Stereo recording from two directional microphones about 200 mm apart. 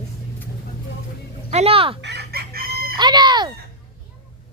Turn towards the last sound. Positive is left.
turn(degrees=-20)  # may be behind; listen again after turning